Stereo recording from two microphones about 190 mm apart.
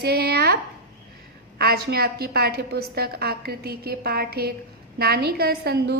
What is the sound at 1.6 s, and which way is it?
A woman's voice, 55° right (ahead or behind).